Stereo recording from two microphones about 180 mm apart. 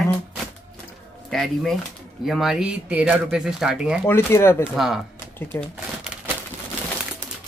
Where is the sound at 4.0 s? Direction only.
15° left (ahead or behind).